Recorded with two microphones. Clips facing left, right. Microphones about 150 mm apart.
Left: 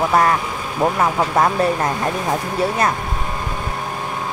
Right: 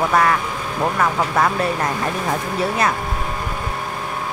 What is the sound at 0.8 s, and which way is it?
Speech, 20° left (ahead or behind).